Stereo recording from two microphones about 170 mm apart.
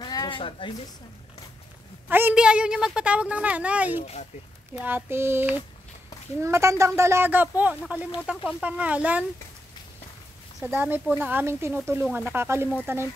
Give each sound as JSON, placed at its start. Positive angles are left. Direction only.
{"t": 0.0, "sound": "a sound", "side_deg": 25}
{"t": 2.0, "sound": "a woman's voice", "side_deg": -10}
{"t": 4.0, "sound": "speech", "side_deg": 40}
{"t": 4.7, "sound": "a woman's voice", "side_deg": -10}
{"t": 10.6, "sound": "a woman's voice", "side_deg": -10}